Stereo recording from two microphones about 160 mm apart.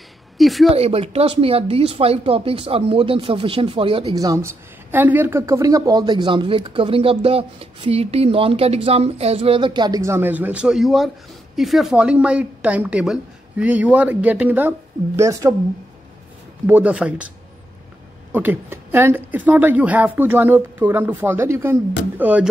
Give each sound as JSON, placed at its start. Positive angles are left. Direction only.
{"t": 0.4, "sound": "a woman's voice", "side_deg": 0}
{"t": 0.7, "sound": "speech", "side_deg": -40}
{"t": 4.1, "sound": "a woman's voice", "side_deg": -20}
{"t": 16.6, "sound": "speech", "side_deg": -10}
{"t": 18.3, "sound": "speech", "side_deg": -10}